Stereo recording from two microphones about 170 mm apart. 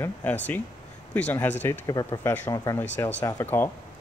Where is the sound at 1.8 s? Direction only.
20° left (ahead or behind).